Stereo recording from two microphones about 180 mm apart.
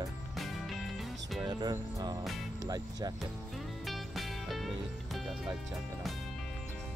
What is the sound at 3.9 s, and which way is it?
Music, centre (ahead or behind).